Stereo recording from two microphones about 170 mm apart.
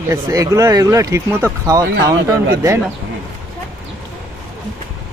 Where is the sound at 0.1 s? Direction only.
20° right (ahead or behind).